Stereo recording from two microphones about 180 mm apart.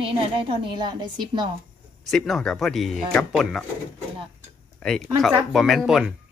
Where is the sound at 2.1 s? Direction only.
Centre (ahead or behind).